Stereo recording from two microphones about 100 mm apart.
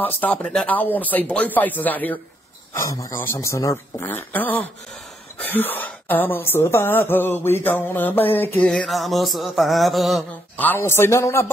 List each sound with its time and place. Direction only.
0.0 s speech: 15° left (ahead or behind)
2.7 s a man's voice: 35° left (ahead or behind)
4.0 s a woman's voice: 15° left (ahead or behind)
8.6 s a sound: 5° left (ahead or behind)
10.6 s a woman's voice: 20° left (ahead or behind)